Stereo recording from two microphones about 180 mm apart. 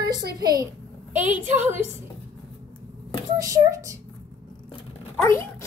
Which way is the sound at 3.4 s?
20° right (ahead or behind).